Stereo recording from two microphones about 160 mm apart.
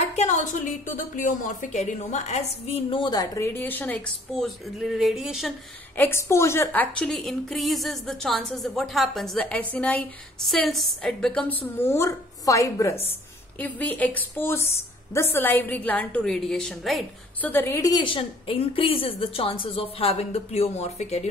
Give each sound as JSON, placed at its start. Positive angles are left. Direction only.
{"t": 0.1, "sound": "a woman's voice", "side_deg": 45}
{"t": 5.9, "sound": "a woman's voice", "side_deg": 15}
{"t": 13.6, "sound": "a woman's voice", "side_deg": 10}
{"t": 17.5, "sound": "a woman's voice", "side_deg": 15}